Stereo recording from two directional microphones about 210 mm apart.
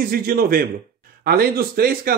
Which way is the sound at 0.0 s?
45° right (ahead or behind).